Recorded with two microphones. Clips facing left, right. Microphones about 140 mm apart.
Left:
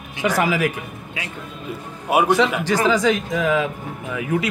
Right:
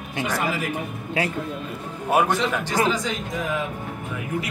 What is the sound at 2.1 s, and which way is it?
Speech, 10° left (ahead or behind).